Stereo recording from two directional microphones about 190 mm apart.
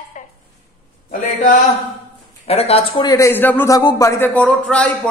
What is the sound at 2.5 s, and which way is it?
A man's voice, 30° left (ahead or behind).